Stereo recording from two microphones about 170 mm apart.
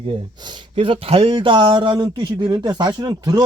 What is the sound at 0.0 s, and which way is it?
Speech, 30° right (ahead or behind).